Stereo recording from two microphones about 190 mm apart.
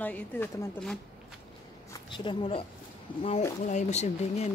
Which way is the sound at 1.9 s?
25° left (ahead or behind).